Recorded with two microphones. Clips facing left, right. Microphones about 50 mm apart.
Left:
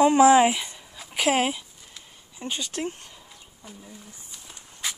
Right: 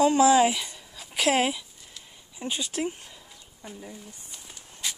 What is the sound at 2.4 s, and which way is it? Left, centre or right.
Speech, centre.